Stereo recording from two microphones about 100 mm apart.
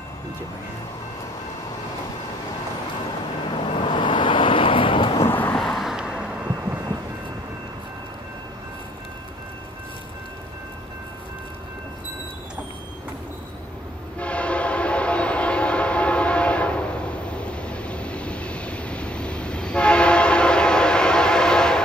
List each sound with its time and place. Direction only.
3.4 s vehicle: 60° left (ahead or behind)
5.3 s vehicle: 20° left (ahead or behind)
5.6 s vehicle: centre (ahead or behind)
14.1 s train: 10° left (ahead or behind)